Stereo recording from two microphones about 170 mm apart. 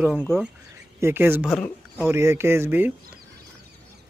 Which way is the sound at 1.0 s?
10° right (ahead or behind).